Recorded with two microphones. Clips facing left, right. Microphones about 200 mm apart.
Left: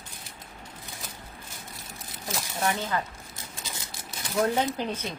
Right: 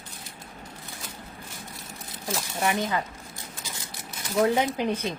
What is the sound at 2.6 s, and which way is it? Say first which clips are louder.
Speech: right 2 dB; 15° right (ahead or behind).